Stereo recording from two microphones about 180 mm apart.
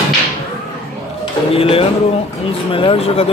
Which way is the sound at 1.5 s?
30° left (ahead or behind).